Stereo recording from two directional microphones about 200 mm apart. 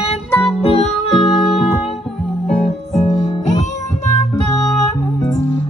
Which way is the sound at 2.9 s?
35° left (ahead or behind).